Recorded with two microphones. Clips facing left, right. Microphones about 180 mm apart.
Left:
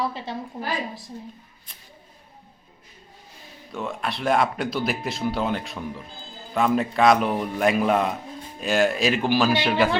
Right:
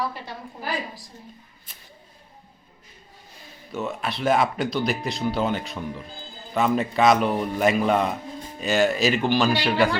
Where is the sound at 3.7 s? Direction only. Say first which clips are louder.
Right 1 dB; 5° right (ahead or behind).